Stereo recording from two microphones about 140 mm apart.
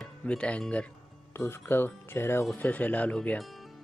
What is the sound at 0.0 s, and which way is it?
Speech, 10° left (ahead or behind).